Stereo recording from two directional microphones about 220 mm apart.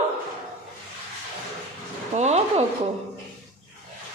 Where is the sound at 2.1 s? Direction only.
30° right (ahead or behind).